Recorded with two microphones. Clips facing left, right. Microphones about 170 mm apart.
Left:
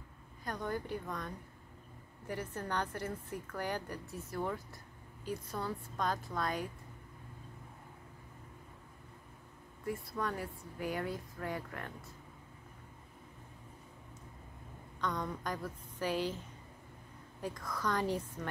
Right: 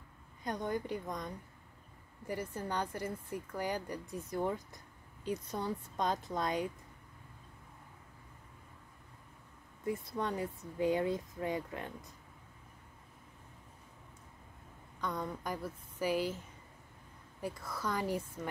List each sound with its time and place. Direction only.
0.4 s a woman's voice: 20° right (ahead or behind)
9.8 s speech: 20° right (ahead or behind)
15.0 s a woman's voice: 10° right (ahead or behind)
17.4 s a woman's voice: 10° right (ahead or behind)